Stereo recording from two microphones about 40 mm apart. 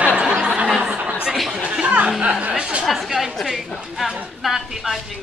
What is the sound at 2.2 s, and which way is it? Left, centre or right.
Speech, right.